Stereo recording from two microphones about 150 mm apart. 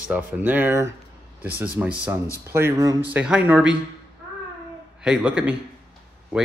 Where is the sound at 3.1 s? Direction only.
10° right (ahead or behind).